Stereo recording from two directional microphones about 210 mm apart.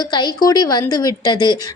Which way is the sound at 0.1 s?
20° left (ahead or behind).